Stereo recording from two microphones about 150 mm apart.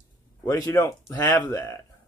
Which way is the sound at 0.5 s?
20° left (ahead or behind).